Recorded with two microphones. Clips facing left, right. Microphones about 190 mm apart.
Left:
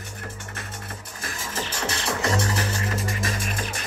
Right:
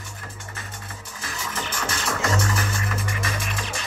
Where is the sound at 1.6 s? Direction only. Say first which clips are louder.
Left 1 dB; 30° left (ahead or behind); by 3.8 s 50° left (ahead or behind).